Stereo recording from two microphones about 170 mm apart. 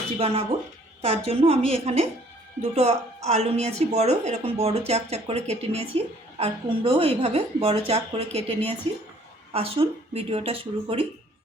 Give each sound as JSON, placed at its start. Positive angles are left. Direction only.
{"t": 0.2, "sound": "a woman's voice", "side_deg": -35}